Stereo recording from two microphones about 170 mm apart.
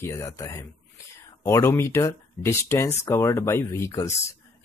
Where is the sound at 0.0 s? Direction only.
15° left (ahead or behind).